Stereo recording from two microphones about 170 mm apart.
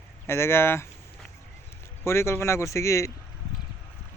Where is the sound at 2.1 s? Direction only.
15° left (ahead or behind).